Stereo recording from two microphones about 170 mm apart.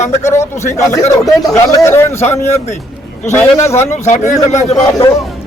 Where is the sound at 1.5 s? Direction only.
15° left (ahead or behind).